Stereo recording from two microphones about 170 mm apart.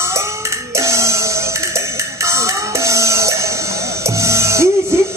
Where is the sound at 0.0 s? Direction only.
15° right (ahead or behind).